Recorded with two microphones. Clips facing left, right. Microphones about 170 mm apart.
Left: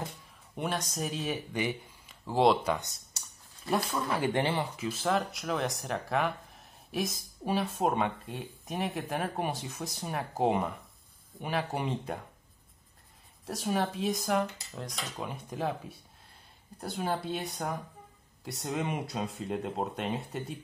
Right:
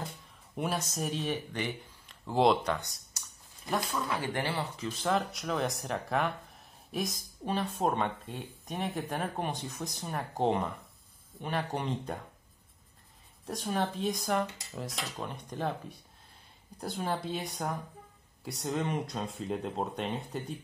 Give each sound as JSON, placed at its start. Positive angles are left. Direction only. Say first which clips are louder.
{"t": 0.6, "sound": "speech", "louder": "even", "side_deg": 0}
{"t": 2.7, "sound": "speech", "louder": "left 2 dB", "side_deg": 20}
{"t": 4.7, "sound": "speech", "louder": "left 1 dB", "side_deg": 5}
{"t": 13.5, "sound": "speech", "louder": "left 1 dB", "side_deg": 5}